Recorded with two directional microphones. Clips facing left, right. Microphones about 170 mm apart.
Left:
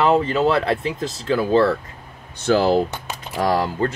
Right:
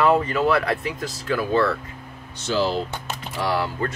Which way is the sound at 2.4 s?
55° left (ahead or behind).